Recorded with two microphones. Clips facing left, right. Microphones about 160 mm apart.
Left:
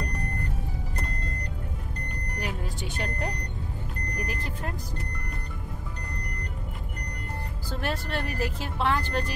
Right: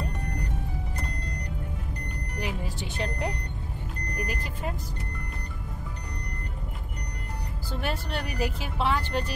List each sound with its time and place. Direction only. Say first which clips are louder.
2.3 s vehicle: right 1 dB; 5° right (ahead or behind)
7.8 s speech: left 1 dB; centre (ahead or behind)